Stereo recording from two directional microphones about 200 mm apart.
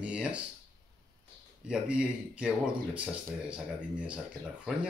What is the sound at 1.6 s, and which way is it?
Speech, 5° right (ahead or behind).